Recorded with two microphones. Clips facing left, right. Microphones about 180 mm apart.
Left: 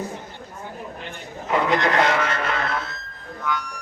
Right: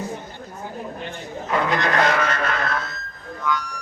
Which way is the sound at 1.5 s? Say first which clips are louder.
Left 1 dB; 20° left (ahead or behind).